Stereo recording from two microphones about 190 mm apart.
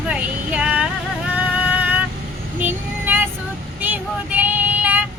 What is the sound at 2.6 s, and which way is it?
Vehicle, 10° right (ahead or behind).